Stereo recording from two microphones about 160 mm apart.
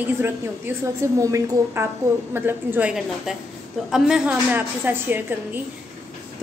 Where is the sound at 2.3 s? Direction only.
15° right (ahead or behind).